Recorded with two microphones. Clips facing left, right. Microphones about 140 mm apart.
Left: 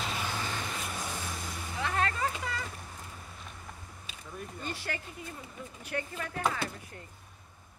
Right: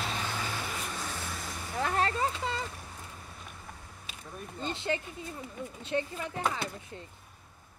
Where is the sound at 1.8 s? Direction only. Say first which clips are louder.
Right 2 dB; 35° right (ahead or behind).